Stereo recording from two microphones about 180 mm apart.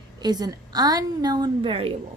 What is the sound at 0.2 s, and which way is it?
A woman's voice, 20° right (ahead or behind).